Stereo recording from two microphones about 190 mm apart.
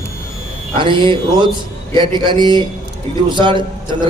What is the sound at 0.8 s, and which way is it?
A man's voice, 25° right (ahead or behind).